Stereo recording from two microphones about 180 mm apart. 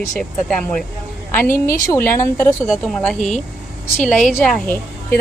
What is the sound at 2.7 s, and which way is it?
A woman's voice, centre (ahead or behind).